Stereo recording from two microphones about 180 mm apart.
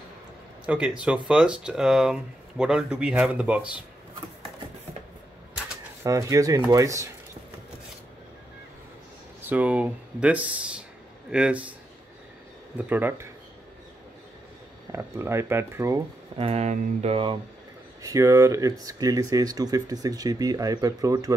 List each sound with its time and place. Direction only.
0.7 s speech: 5° right (ahead or behind)
6.0 s speech: 15° right (ahead or behind)
9.4 s speech: 10° right (ahead or behind)
12.7 s speech: 10° right (ahead or behind)
14.9 s speech: 15° right (ahead or behind)
16.3 s mantra: 35° right (ahead or behind)
18.0 s speech: 20° right (ahead or behind)